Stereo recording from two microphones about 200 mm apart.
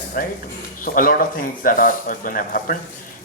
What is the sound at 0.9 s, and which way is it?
Speech, 45° left (ahead or behind).